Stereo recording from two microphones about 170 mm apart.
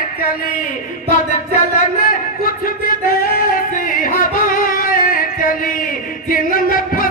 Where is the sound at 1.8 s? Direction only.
55° left (ahead or behind).